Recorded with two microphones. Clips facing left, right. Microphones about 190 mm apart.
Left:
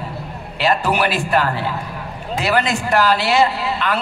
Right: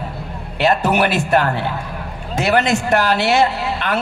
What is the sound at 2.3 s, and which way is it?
Speech, 45° right (ahead or behind).